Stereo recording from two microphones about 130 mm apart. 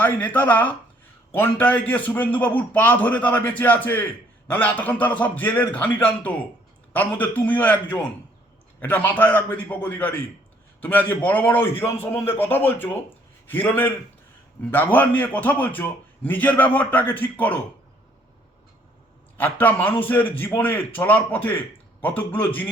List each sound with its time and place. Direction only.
0.0 s a man's voice: 15° left (ahead or behind)
19.4 s a man's voice: 15° left (ahead or behind)